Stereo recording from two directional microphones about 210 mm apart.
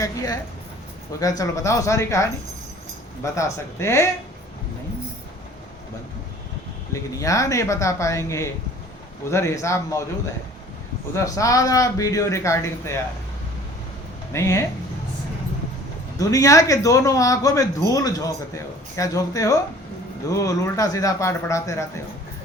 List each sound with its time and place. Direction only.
0.0 s a man's voice: 15° left (ahead or behind)
3.3 s a man's voice: 15° left (ahead or behind)
7.2 s a man's voice: 15° left (ahead or behind)
11.1 s a man's voice: 15° left (ahead or behind)
14.3 s a man's voice: 15° left (ahead or behind)
16.1 s a man's voice: 15° left (ahead or behind)